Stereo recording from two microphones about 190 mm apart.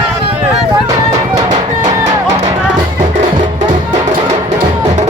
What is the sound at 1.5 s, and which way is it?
Music, 40° right (ahead or behind).